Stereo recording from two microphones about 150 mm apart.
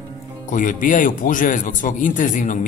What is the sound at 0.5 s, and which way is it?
Speech, 60° left (ahead or behind).